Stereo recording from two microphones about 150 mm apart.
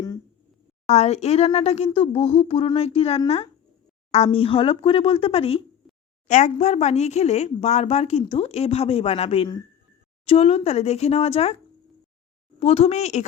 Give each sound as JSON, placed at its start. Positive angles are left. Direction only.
{"t": 0.9, "sound": "speech", "side_deg": 45}
{"t": 1.5, "sound": "a sound", "side_deg": 45}
{"t": 6.2, "sound": "speech", "side_deg": 55}
{"t": 12.5, "sound": "speech", "side_deg": 40}